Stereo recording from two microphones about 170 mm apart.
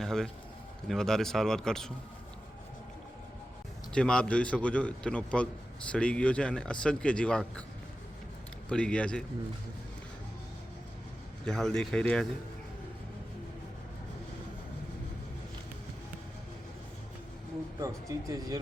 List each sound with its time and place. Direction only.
0.0 s a man's voice: centre (ahead or behind)
3.9 s speech: 5° left (ahead or behind)
8.7 s a man's voice: 5° left (ahead or behind)
11.4 s a man's voice: 5° left (ahead or behind)
17.7 s speech: 20° right (ahead or behind)